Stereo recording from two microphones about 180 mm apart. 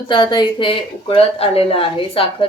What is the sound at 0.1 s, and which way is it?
Speech, 25° left (ahead or behind).